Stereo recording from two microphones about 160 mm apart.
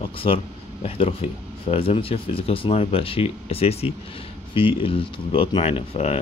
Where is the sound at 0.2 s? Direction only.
35° left (ahead or behind).